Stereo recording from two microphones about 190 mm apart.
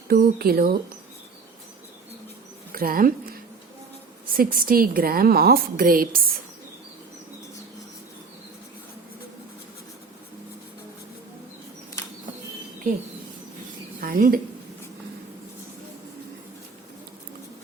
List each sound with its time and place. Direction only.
0.1 s a woman's voice: 55° right (ahead or behind)
2.7 s speech: 50° right (ahead or behind)
4.4 s a woman's voice: 50° right (ahead or behind)
14.0 s speech: 45° right (ahead or behind)